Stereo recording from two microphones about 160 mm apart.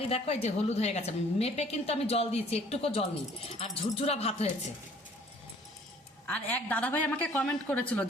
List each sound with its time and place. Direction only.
0.1 s a woman's voice: 40° left (ahead or behind)
6.2 s a woman's voice: 10° left (ahead or behind)